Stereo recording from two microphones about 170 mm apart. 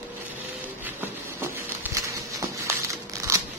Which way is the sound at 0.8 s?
15° right (ahead or behind).